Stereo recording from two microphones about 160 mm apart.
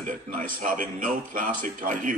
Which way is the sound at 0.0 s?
55° right (ahead or behind).